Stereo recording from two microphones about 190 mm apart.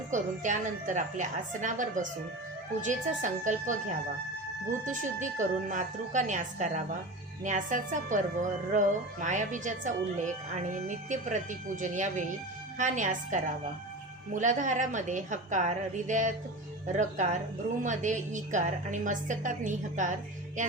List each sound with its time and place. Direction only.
0.1 s a woman's voice: 40° right (ahead or behind)
4.9 s a woman's voice: 40° right (ahead or behind)